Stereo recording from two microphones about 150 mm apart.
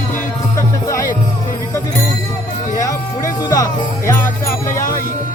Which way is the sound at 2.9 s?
20° left (ahead or behind).